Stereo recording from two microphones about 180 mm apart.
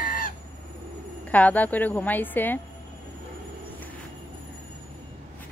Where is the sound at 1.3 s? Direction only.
10° left (ahead or behind).